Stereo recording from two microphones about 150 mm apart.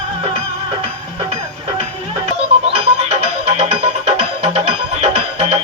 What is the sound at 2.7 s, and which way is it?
Music, 45° right (ahead or behind).